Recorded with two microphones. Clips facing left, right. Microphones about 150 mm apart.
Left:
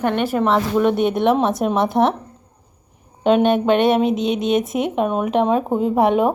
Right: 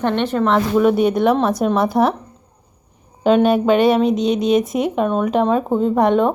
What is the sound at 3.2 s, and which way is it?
Speech, centre (ahead or behind).